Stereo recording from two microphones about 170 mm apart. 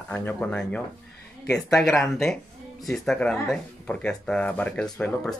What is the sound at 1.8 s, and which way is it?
Speech, centre (ahead or behind).